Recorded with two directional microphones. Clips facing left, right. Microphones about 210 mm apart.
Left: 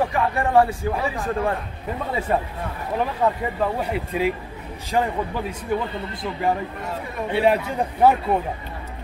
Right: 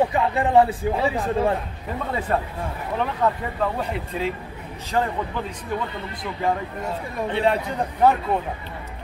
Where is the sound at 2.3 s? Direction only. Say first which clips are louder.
Left 1 dB; 10° left (ahead or behind).